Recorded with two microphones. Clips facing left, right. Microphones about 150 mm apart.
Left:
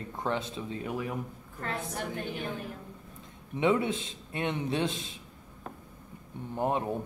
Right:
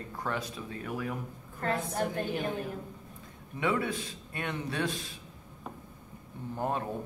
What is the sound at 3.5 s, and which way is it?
Speech, 20° left (ahead or behind).